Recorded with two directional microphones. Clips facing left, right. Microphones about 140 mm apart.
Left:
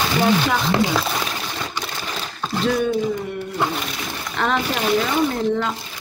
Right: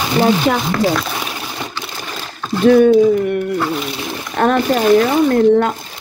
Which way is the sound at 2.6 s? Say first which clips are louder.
Right 12 dB; 55° right (ahead or behind).